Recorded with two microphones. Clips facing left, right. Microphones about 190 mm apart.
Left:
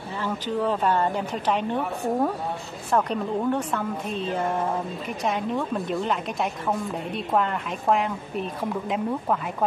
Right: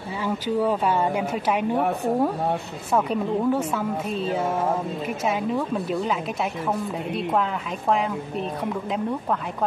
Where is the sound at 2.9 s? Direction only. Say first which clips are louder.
Right 1 dB; 5° right (ahead or behind).